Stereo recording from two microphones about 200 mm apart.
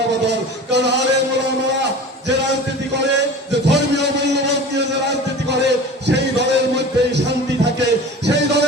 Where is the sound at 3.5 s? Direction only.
60° right (ahead or behind).